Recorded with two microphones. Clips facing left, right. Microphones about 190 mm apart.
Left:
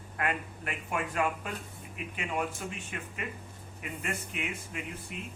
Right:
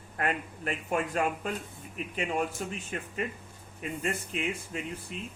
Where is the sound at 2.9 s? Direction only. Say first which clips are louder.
Right 5 dB; 40° right (ahead or behind).